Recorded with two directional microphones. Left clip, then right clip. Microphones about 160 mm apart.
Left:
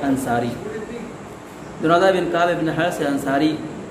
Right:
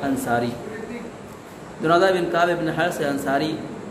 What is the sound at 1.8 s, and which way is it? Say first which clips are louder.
A man's voice: left 2 dB; 20° right (ahead or behind).